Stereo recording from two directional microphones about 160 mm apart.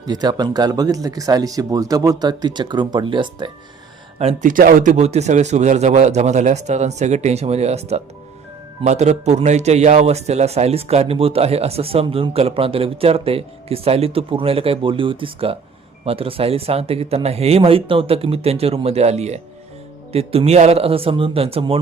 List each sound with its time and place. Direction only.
0.0 s speech: 25° right (ahead or behind)
4.4 s a man's voice: 55° right (ahead or behind); by 21.8 s 35° right (ahead or behind)